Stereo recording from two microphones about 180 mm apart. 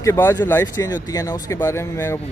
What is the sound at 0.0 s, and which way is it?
Speech, 15° left (ahead or behind).